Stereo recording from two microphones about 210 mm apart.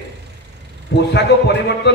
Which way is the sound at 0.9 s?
55° left (ahead or behind).